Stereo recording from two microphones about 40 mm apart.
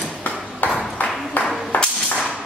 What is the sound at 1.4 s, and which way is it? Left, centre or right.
Clapping, left.